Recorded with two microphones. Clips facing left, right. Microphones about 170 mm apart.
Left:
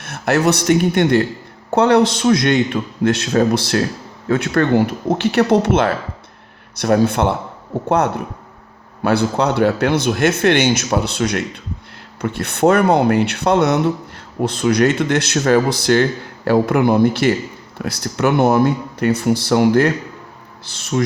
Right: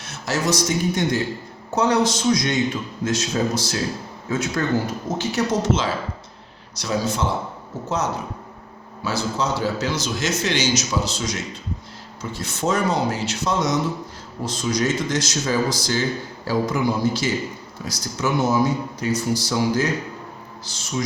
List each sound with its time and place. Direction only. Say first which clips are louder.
0.0 s a man's voice: left 8 dB; 60° left (ahead or behind)